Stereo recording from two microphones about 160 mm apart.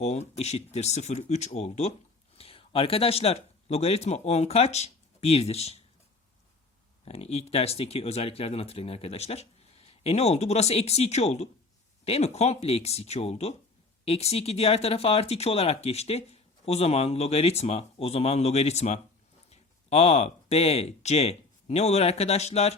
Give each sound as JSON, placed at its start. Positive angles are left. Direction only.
{"t": 0.0, "sound": "a man's voice", "side_deg": 45}
{"t": 7.0, "sound": "speech", "side_deg": 40}